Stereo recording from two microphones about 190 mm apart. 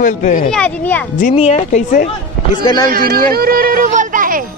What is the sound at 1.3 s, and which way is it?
Speech, 35° left (ahead or behind).